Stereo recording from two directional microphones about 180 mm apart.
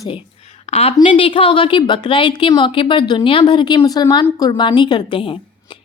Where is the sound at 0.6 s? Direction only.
35° left (ahead or behind).